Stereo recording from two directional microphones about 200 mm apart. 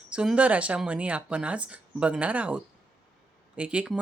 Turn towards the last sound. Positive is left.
turn(degrees=-5)  # may be behind; listen again after turning